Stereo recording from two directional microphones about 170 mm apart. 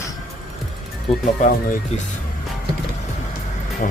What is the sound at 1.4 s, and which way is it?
Speech, 45° left (ahead or behind).